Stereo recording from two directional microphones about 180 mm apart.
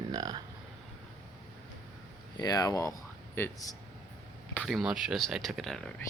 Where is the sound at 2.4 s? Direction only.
20° left (ahead or behind).